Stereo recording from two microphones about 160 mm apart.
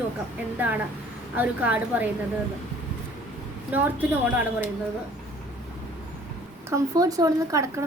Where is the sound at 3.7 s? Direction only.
10° right (ahead or behind).